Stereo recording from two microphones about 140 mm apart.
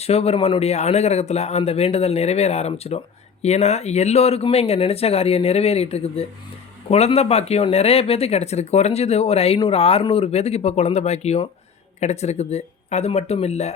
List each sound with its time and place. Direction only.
0.0 s speech: 45° left (ahead or behind)